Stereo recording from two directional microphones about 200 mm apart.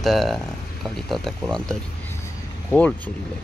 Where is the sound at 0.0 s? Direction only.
Centre (ahead or behind).